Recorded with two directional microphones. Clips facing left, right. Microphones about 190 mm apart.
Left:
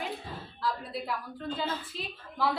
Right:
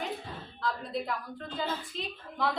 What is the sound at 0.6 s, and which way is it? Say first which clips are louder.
A woman's voice: right 1 dB; 5° left (ahead or behind).